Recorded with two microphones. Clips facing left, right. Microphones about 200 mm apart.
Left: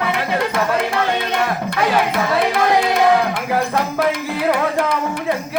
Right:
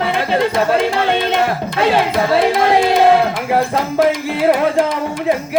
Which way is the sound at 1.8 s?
25° right (ahead or behind).